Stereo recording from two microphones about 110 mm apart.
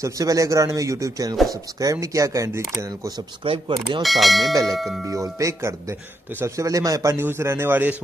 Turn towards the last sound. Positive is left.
turn(degrees=-20)  # may be behind; listen again after turning